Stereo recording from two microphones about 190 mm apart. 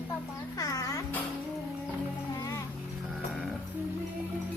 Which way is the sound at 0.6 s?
20° left (ahead or behind).